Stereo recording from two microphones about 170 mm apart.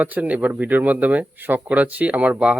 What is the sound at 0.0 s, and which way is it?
Speech, 10° right (ahead or behind).